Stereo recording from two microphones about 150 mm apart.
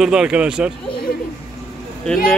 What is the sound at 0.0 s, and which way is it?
Speech, 5° right (ahead or behind).